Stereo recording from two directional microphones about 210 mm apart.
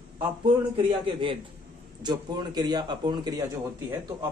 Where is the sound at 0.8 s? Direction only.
25° right (ahead or behind).